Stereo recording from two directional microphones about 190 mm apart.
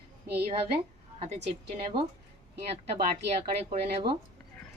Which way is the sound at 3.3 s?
35° right (ahead or behind).